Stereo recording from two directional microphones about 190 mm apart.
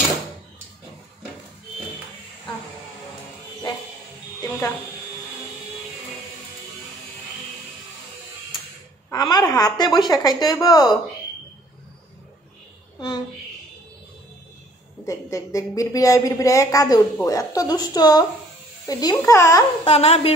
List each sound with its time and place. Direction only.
4.4 s a sound: 15° left (ahead or behind)
9.1 s a woman's voice: 20° left (ahead or behind)
15.0 s speech: 15° left (ahead or behind)
19.8 s a woman's voice: 30° left (ahead or behind)